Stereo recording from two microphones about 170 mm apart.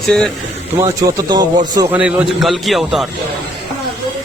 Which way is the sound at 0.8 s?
20° right (ahead or behind).